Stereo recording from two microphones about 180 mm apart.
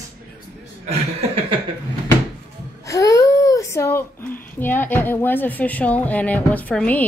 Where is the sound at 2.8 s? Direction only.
15° left (ahead or behind).